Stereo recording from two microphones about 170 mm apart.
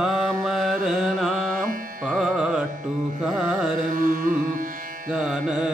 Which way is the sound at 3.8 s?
50° right (ahead or behind).